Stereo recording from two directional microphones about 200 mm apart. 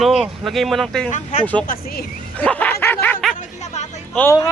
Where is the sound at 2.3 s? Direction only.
5° left (ahead or behind).